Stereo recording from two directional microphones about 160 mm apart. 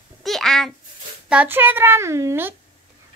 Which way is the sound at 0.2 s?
Centre (ahead or behind).